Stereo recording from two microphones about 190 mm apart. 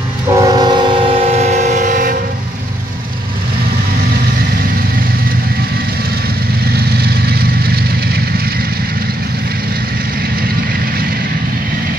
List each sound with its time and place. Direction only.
0.3 s train: 20° right (ahead or behind); by 2.1 s 45° right (ahead or behind)
6.7 s vehicle: 55° right (ahead or behind)